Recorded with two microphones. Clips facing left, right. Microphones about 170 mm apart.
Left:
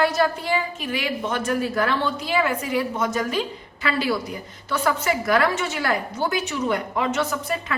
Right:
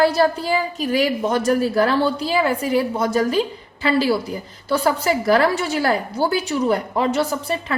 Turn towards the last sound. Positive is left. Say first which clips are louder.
# right 3 dB
turn(degrees=-30)  # may be behind; listen again after turning